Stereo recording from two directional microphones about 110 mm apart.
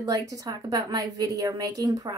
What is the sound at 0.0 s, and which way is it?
A woman's voice, 30° right (ahead or behind).